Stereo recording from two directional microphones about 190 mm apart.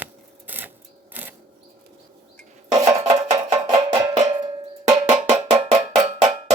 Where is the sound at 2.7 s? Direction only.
20° right (ahead or behind).